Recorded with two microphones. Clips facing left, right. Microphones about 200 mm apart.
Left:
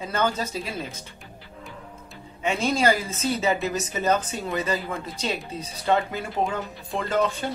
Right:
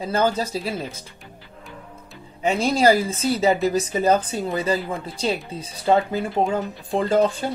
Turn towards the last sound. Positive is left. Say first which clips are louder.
# right 5 dB
turn(degrees=-30)  # may be behind; listen again after turning